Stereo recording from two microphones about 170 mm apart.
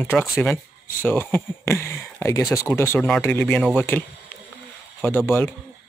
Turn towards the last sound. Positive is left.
turn(degrees=10)  # may be behind; listen again after turning